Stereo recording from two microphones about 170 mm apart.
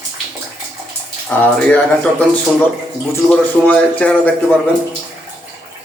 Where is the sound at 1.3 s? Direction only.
10° left (ahead or behind).